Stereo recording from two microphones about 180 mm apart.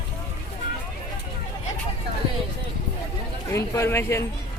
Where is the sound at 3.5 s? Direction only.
15° left (ahead or behind).